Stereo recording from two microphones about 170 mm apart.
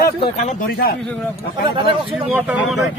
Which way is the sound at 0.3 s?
40° left (ahead or behind).